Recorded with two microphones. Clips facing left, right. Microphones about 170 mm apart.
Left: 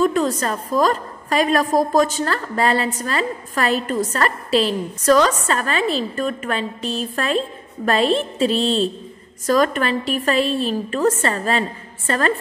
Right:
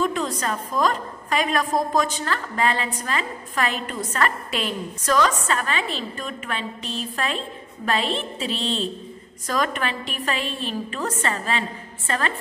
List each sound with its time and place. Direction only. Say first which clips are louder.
0.0 s a woman's voice: left 6 dB; 45° left (ahead or behind)